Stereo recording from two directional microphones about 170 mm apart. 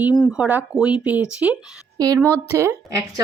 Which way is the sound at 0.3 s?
5° right (ahead or behind).